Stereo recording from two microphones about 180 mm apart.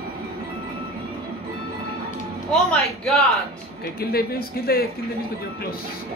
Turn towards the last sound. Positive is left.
turn(degrees=55)  # may be behind; listen again after turning